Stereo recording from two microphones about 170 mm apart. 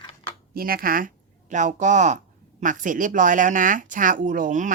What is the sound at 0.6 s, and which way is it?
A man's voice, 60° right (ahead or behind).